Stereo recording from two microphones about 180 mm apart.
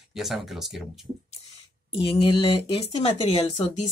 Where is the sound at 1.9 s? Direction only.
30° left (ahead or behind).